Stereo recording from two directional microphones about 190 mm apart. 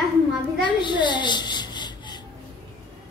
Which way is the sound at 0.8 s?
25° left (ahead or behind).